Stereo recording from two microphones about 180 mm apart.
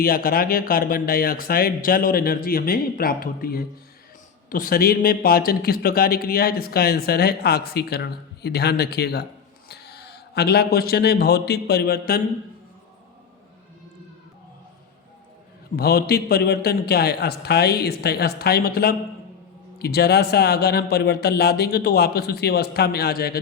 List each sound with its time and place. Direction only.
0.0 s a man's voice: 55° left (ahead or behind)
15.7 s a man's voice: 55° left (ahead or behind)